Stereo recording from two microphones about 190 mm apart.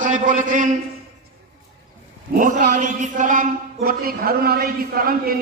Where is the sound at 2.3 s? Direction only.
40° right (ahead or behind).